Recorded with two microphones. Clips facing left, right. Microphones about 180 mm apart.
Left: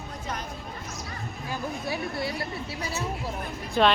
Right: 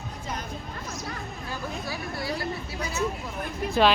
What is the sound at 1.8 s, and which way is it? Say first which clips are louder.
Speech: left 3 dB; 25° left (ahead or behind).